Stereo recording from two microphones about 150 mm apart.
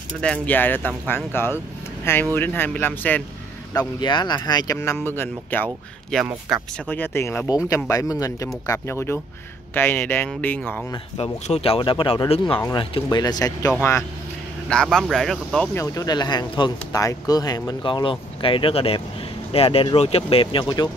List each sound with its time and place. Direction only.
0.2 s speech: 10° left (ahead or behind)
4.0 s speech: 30° left (ahead or behind); by 6.7 s centre (ahead or behind)
6.9 s speech: 15° left (ahead or behind)
11.1 s speech: 45° left (ahead or behind); by 13.7 s 25° left (ahead or behind)
14.7 s speech: 5° left (ahead or behind)
15.7 s speech: 20° left (ahead or behind)